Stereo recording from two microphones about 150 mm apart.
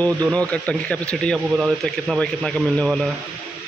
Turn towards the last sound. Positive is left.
turn(degrees=0)  # may be behind; listen again after turning